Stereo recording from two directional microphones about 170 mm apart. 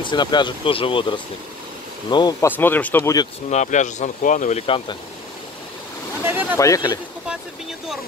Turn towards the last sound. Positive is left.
turn(degrees=20)  # may be behind; listen again after turning